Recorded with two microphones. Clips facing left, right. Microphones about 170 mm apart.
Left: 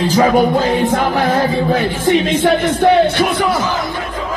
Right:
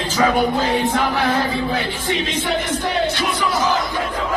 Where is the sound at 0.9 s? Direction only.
50° left (ahead or behind).